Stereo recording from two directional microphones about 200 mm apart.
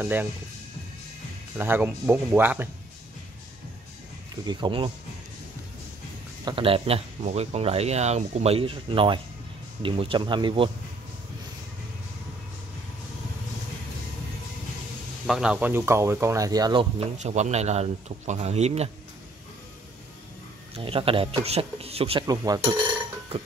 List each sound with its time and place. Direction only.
0.0 s speech: 10° right (ahead or behind)
1.6 s speech: 10° right (ahead or behind)
4.5 s speech: 25° right (ahead or behind)
6.4 s speech: 25° right (ahead or behind)
15.2 s speech: 5° right (ahead or behind); by 17.1 s 20° right (ahead or behind)
17.2 s speech: 35° right (ahead or behind)
20.7 s speech: 25° right (ahead or behind)
22.2 s speech: 20° right (ahead or behind)